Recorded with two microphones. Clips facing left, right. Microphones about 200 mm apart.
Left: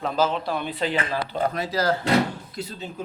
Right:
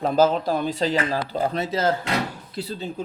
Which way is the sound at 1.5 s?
25° right (ahead or behind).